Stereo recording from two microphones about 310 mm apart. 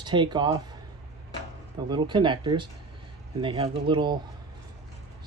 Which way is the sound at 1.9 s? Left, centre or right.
Centre.